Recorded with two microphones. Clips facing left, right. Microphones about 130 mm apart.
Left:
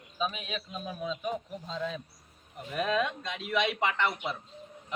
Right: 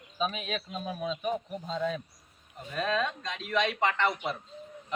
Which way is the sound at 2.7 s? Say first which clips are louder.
Left 1 dB; 15° left (ahead or behind).